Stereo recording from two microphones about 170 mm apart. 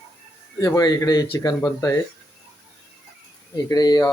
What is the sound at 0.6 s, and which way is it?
Speech, 20° left (ahead or behind).